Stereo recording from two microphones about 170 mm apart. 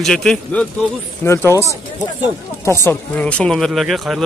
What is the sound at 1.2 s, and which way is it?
Speech, 15° left (ahead or behind).